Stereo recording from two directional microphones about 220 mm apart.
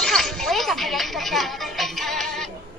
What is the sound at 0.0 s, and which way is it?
Music, centre (ahead or behind).